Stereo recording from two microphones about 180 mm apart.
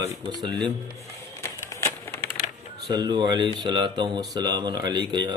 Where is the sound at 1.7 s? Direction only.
15° left (ahead or behind).